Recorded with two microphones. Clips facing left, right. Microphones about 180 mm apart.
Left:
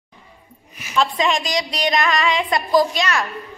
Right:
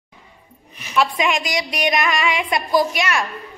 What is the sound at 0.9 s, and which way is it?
A child's voice, 15° right (ahead or behind).